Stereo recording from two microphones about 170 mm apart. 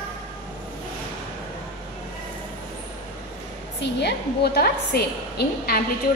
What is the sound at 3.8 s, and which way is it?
A woman's voice, 85° left.